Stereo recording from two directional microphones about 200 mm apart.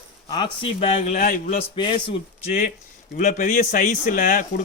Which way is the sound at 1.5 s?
25° left (ahead or behind).